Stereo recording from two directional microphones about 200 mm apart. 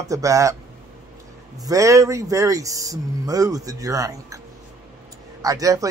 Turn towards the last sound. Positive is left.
turn(degrees=-15)  # may be behind; listen again after turning